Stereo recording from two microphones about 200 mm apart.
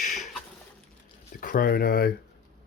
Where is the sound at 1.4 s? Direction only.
45° left (ahead or behind).